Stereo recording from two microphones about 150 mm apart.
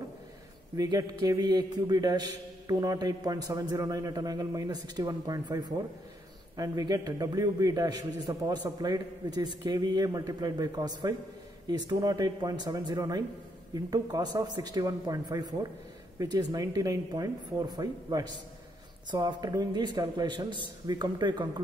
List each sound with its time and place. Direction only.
0.7 s a man's voice: 25° right (ahead or behind)